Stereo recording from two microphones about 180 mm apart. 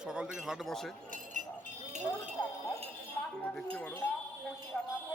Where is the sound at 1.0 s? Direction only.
45° right (ahead or behind).